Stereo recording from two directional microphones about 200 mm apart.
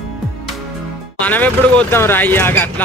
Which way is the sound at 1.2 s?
10° left (ahead or behind).